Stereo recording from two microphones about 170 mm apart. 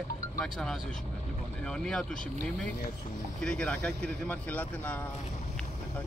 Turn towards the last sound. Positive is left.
turn(degrees=10)  # may be behind; listen again after turning